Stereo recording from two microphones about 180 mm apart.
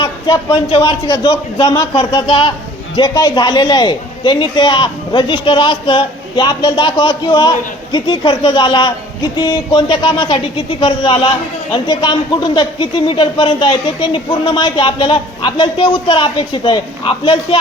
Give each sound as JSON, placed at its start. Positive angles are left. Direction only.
{"t": 0.0, "sound": "speech", "side_deg": 25}